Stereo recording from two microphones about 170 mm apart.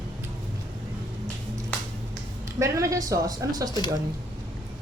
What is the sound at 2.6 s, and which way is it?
Speech, 20° right (ahead or behind).